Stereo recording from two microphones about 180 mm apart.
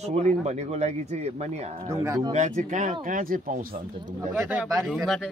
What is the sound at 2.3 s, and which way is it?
Speech, 45° right (ahead or behind).